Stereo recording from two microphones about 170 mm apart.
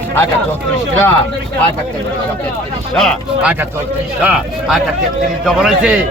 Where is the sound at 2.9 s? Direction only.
Centre (ahead or behind).